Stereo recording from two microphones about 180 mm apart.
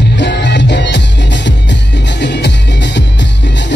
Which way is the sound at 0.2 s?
70° left (ahead or behind).